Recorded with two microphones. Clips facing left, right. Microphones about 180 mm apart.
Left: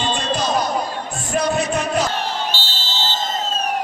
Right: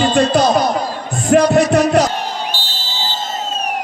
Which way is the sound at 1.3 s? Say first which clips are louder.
Right 9 dB; 70° right (ahead or behind).